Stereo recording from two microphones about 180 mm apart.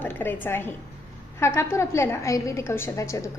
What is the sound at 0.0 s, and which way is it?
A woman's voice, 10° left (ahead or behind).